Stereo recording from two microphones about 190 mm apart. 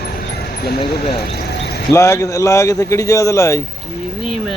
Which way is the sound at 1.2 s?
60° left (ahead or behind).